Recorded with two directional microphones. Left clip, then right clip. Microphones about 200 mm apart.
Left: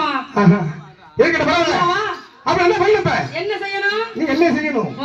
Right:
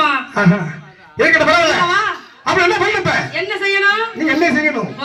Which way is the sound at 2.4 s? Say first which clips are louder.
Right 1 dB; 50° left (ahead or behind).